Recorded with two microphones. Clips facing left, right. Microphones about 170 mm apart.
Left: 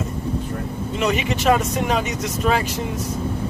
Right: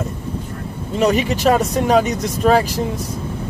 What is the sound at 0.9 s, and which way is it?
Speech, 40° right (ahead or behind).